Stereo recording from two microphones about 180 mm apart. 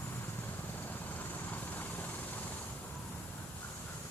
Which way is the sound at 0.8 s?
10° left (ahead or behind).